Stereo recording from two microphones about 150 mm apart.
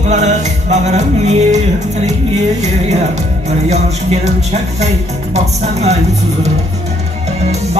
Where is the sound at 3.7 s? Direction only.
45° right (ahead or behind).